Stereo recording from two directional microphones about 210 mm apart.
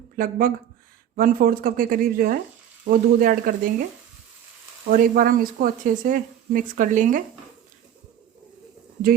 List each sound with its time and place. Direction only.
0.2 s speech: 40° right (ahead or behind)
4.9 s speech: 40° right (ahead or behind)